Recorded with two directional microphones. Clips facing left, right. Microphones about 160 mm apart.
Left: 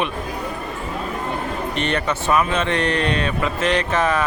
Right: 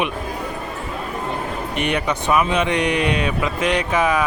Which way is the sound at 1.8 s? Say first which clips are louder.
Right 2 dB; 15° right (ahead or behind).